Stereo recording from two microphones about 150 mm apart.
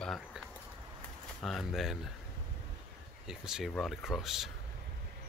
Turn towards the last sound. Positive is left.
turn(degrees=0)  # may be behind; listen again after turning